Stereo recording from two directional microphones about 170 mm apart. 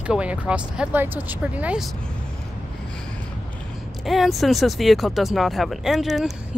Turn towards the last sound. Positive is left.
turn(degrees=0)  # may be behind; listen again after turning